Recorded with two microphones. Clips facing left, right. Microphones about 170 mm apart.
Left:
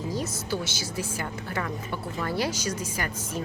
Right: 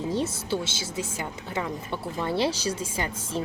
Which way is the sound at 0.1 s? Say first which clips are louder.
Right 3 dB; 30° right (ahead or behind).